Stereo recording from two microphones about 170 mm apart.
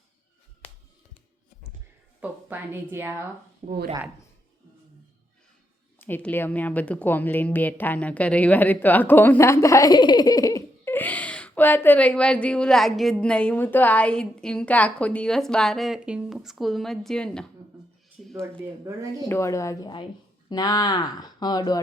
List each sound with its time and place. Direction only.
2.2 s a woman's voice: 10° right (ahead or behind)
3.6 s speech: 40° right (ahead or behind)
6.0 s a woman's voice: 10° left (ahead or behind)
19.3 s speech: 15° left (ahead or behind)